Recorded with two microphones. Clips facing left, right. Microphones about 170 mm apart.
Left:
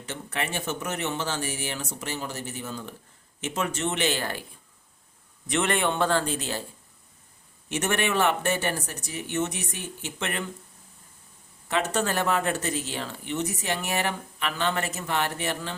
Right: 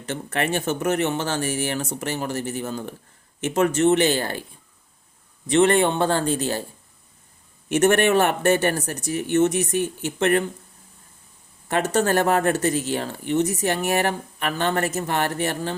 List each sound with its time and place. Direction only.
0.0 s speech: 50° right (ahead or behind)
5.5 s speech: 30° right (ahead or behind)
7.7 s speech: 50° right (ahead or behind)
11.7 s speech: 45° right (ahead or behind)